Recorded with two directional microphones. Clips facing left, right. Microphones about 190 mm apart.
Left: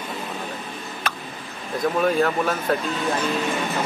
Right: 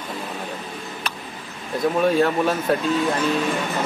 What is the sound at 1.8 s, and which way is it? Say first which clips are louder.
Speech: right 2 dB; centre (ahead or behind).